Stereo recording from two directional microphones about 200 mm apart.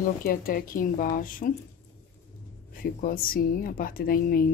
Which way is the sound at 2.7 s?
45° left (ahead or behind).